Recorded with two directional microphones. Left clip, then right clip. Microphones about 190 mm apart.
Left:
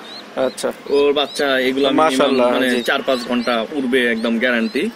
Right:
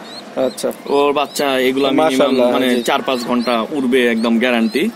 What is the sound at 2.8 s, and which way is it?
Speech, 40° right (ahead or behind).